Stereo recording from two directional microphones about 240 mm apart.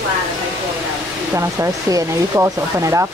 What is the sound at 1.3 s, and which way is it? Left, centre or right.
Speech, centre.